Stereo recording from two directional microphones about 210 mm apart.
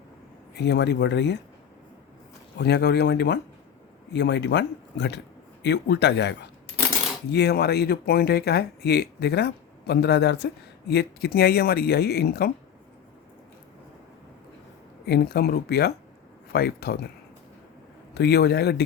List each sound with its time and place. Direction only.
0.5 s speech: 55° left (ahead or behind)
2.6 s speech: 50° left (ahead or behind)
15.0 s speech: 50° left (ahead or behind)
18.1 s speech: 50° left (ahead or behind)